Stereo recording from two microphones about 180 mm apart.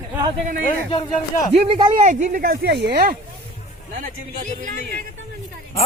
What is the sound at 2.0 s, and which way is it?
Speech, 45° right (ahead or behind).